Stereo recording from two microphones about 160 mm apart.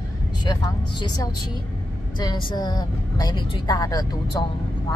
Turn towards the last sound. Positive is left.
turn(degrees=25)  # may be behind; listen again after turning